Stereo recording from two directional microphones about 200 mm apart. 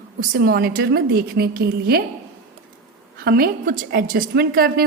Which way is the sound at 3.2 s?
50° right (ahead or behind).